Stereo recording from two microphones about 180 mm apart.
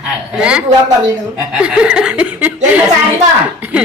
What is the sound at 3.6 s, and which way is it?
Speech, 10° right (ahead or behind).